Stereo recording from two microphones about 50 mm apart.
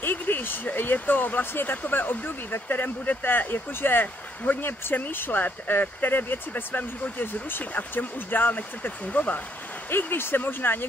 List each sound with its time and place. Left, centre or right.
0.0 s speech: left
9.8 s speech: left